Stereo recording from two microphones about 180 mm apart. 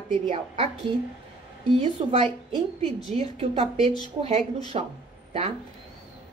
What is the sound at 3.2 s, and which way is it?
A woman's voice, 30° right (ahead or behind).